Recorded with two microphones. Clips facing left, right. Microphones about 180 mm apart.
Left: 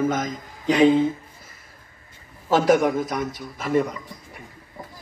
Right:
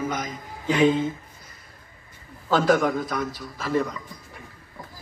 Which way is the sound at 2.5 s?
20° left (ahead or behind).